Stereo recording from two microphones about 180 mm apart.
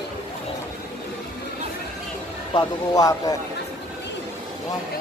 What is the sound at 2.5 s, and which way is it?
Speech, 20° left (ahead or behind).